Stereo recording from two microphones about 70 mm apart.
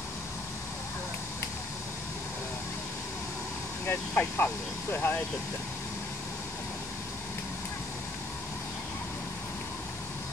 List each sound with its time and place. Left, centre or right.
3.8 s speech: left